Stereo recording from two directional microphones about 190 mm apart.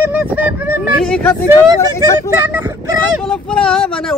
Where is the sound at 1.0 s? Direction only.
5° left (ahead or behind).